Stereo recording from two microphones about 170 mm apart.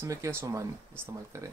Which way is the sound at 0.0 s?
15° right (ahead or behind).